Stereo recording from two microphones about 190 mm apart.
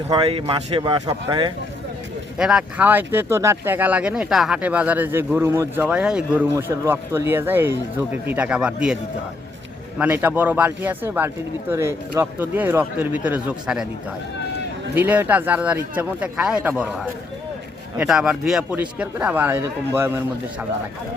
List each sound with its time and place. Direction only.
0.1 s speech: 25° right (ahead or behind)
2.4 s speech: 5° right (ahead or behind)
10.0 s speech: 10° right (ahead or behind)
14.9 s speech: 10° right (ahead or behind)